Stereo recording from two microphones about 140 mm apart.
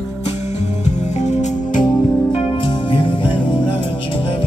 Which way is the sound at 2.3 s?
35° left (ahead or behind).